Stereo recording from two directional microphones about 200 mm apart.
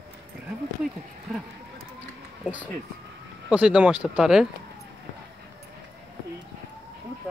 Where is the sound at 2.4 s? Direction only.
5° right (ahead or behind).